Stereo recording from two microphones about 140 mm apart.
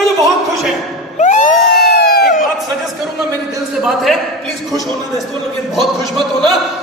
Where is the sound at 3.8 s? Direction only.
Centre (ahead or behind).